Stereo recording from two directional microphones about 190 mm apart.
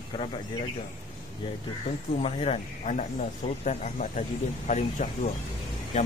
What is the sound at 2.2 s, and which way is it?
Speech, 30° left (ahead or behind).